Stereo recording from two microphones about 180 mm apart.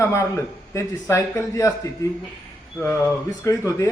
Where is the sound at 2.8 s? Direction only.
15° left (ahead or behind).